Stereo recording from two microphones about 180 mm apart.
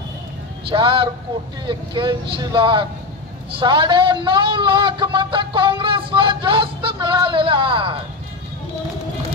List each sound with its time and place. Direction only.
0.7 s a man's voice: 30° right (ahead or behind)